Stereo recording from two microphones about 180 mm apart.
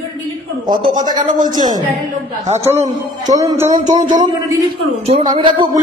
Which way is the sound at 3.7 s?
40° right (ahead or behind).